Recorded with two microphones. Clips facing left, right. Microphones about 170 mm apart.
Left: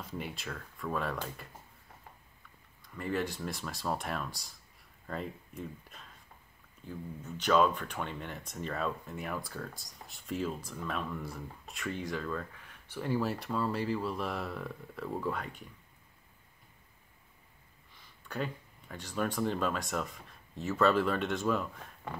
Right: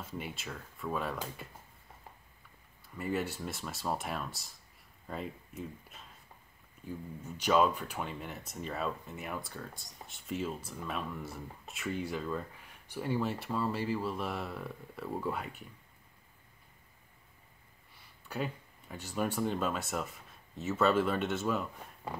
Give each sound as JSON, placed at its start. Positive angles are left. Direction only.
{"t": 0.0, "sound": "speech", "side_deg": 0}
{"t": 2.8, "sound": "speech", "side_deg": -5}
{"t": 13.1, "sound": "speech", "side_deg": 0}
{"t": 18.3, "sound": "speech", "side_deg": -5}